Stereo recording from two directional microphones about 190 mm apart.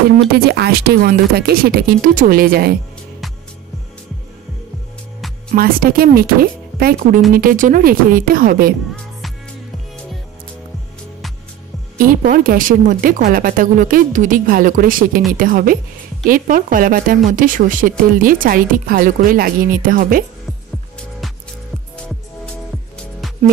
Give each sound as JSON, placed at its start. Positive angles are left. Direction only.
{"t": 0.3, "sound": "speech", "side_deg": -55}
{"t": 5.5, "sound": "speech", "side_deg": -50}
{"t": 12.0, "sound": "speech", "side_deg": -45}